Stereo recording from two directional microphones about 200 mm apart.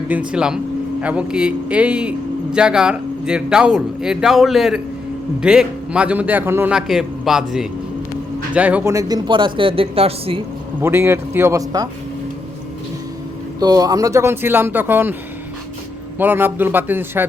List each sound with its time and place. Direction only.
0.1 s a man's voice: 5° right (ahead or behind); by 10.4 s 30° right (ahead or behind)
10.8 s a man's voice: 10° right (ahead or behind)
13.6 s a man's voice: 20° right (ahead or behind)
16.1 s a man's voice: 10° right (ahead or behind)